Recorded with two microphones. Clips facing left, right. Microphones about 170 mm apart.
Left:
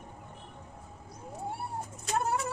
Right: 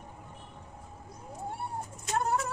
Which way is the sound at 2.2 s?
5° left (ahead or behind).